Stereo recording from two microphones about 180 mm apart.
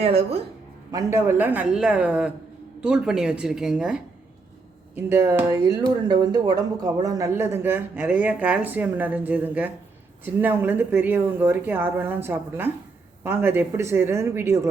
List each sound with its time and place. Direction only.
0.0 s speech: 35° right (ahead or behind)
0.9 s speech: 15° right (ahead or behind)